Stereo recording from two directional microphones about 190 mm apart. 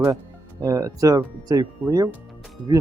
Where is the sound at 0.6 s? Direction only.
15° right (ahead or behind).